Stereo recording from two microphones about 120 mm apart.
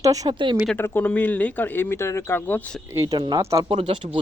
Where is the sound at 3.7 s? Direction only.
50° right (ahead or behind).